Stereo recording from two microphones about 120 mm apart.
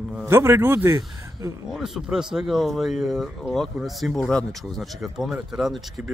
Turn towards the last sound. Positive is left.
turn(degrees=-5)  # may be behind; listen again after turning